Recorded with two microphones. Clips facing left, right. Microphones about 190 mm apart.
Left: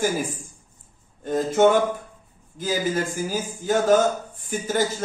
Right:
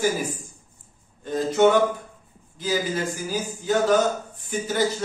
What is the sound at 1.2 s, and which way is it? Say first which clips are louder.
A man's voice: left 1 dB; 50° left (ahead or behind).